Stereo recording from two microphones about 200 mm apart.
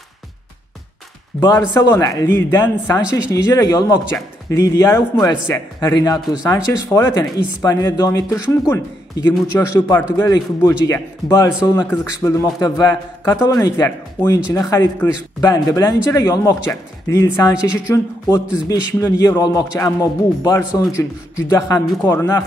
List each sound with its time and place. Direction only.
1.4 s a man's voice: 20° left (ahead or behind)